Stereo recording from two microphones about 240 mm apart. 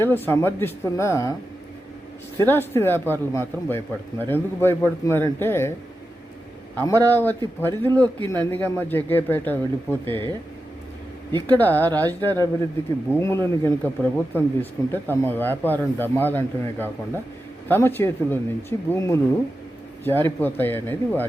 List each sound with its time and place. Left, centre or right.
0.0 s speech: centre
2.5 s speech: centre
6.7 s speech: centre
11.3 s speech: centre
11.5 s speech: centre